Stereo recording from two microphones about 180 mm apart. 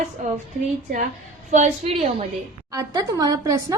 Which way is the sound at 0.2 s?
45° right (ahead or behind).